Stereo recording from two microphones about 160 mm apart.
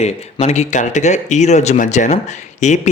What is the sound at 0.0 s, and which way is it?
Speech, 45° left (ahead or behind).